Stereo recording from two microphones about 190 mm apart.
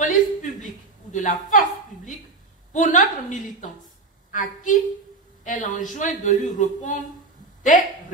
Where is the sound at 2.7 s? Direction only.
45° left (ahead or behind).